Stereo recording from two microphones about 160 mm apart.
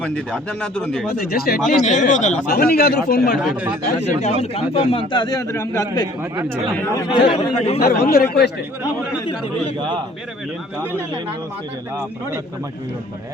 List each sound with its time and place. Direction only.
0.0 s speech: 5° left (ahead or behind)
1.1 s a man's voice: 75° left (ahead or behind)
1.5 s speech: centre (ahead or behind)
1.8 s speech: 50° left (ahead or behind)
2.5 s a man's voice: 75° left (ahead or behind)
3.3 s speech: 5° right (ahead or behind)
4.2 s a man's voice: 45° left (ahead or behind); by 6.1 s 25° left (ahead or behind)
6.5 s speech: 10° left (ahead or behind)
7.1 s a man's voice: 35° left (ahead or behind)
7.8 s a man's voice: 70° left (ahead or behind)